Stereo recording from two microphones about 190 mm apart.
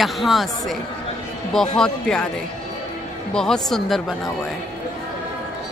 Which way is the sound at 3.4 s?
Centre (ahead or behind).